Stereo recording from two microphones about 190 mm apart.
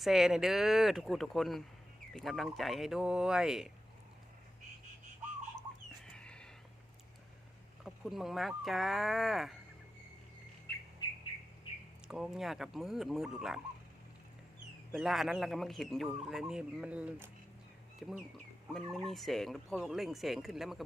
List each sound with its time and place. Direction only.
0.0 s speech: centre (ahead or behind)
6.1 s a sound: 5° left (ahead or behind)
7.9 s speech: centre (ahead or behind)
11.0 s bird: 25° left (ahead or behind)
12.0 s speech: centre (ahead or behind)
14.9 s speech: centre (ahead or behind)